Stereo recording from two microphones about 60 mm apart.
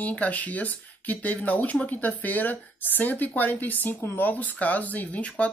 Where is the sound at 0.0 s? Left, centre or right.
Left.